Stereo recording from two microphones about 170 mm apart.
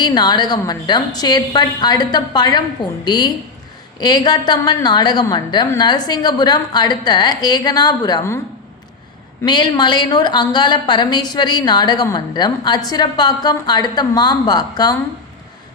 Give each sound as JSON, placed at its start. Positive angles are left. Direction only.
{"t": 0.0, "sound": "a woman's voice", "side_deg": 25}
{"t": 9.4, "sound": "a woman's voice", "side_deg": 25}